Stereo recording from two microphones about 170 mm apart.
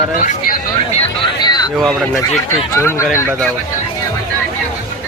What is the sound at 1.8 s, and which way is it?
Speech, centre (ahead or behind).